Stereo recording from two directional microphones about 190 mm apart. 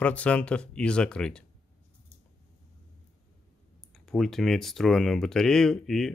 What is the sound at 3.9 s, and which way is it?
Speech, centre (ahead or behind).